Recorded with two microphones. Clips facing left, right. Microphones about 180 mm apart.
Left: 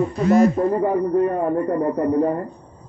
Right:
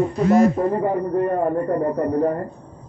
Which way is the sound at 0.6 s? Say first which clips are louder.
Left 1 dB; 5° right (ahead or behind).